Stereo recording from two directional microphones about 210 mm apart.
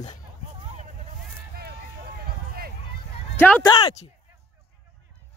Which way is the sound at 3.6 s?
25° left (ahead or behind).